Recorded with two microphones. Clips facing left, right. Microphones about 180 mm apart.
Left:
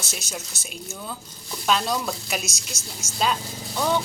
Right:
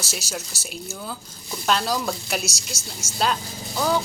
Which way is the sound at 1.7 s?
Centre (ahead or behind).